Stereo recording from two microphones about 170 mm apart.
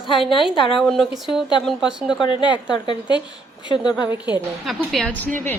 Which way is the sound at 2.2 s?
30° left (ahead or behind).